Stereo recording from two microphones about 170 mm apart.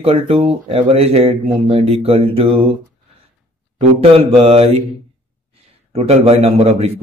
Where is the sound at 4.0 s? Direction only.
35° right (ahead or behind).